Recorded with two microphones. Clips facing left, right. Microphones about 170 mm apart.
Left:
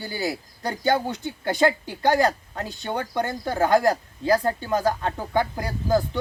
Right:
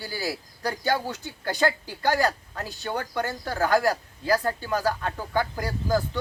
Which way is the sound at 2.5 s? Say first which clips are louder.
Left 2 dB; 20° left (ahead or behind).